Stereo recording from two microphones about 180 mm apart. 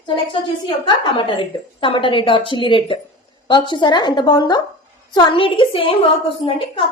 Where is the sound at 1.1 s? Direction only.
30° left (ahead or behind).